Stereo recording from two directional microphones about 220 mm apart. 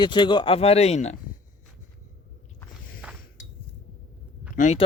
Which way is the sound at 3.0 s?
5° right (ahead or behind).